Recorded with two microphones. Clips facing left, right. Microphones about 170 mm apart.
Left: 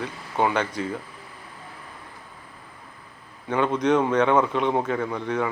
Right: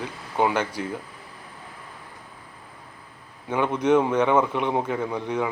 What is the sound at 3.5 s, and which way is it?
A man's voice, 10° right (ahead or behind).